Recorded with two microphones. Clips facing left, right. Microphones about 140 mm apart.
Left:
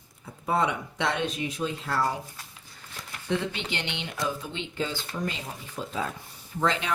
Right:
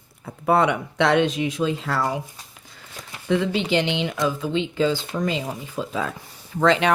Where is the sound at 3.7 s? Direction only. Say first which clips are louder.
Right 12 dB; 90° right.